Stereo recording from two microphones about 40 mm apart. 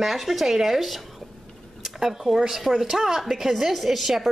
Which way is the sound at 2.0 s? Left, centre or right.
Centre.